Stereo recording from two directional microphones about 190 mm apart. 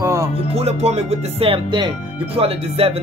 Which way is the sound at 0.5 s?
35° right (ahead or behind).